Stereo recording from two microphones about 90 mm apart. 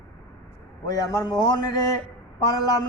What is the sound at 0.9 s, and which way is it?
A man's voice, 40° left (ahead or behind).